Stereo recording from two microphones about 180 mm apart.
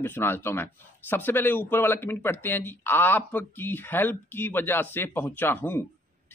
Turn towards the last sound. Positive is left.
turn(degrees=10)  # may be behind; listen again after turning